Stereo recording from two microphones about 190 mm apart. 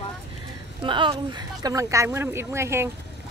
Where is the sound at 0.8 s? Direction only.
25° right (ahead or behind).